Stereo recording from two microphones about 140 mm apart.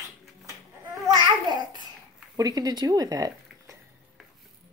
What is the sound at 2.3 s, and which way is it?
Speech, 25° right (ahead or behind).